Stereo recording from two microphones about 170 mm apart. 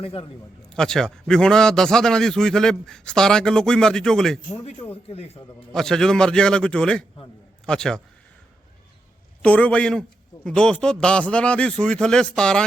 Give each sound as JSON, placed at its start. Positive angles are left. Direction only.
{"t": 0.0, "sound": "speech", "side_deg": 35}
{"t": 0.7, "sound": "a man's voice", "side_deg": 5}
{"t": 5.0, "sound": "speech", "side_deg": 35}
{"t": 5.7, "sound": "a man's voice", "side_deg": 5}
{"t": 9.4, "sound": "a man's voice", "side_deg": 10}